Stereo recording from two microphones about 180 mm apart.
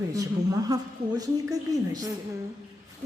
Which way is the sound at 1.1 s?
20° right (ahead or behind).